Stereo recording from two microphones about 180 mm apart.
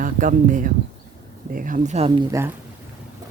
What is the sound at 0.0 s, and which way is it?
Speech, 45° right (ahead or behind).